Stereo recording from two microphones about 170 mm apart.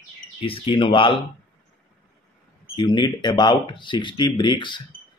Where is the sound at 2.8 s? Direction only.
25° left (ahead or behind).